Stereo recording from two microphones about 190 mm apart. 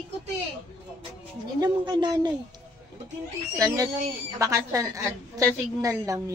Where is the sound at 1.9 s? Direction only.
20° right (ahead or behind).